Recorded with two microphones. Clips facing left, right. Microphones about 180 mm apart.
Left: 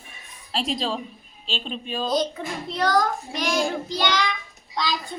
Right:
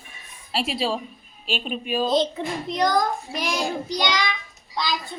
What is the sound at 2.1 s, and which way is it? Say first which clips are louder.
A woman's voice: even; 25° right (ahead or behind).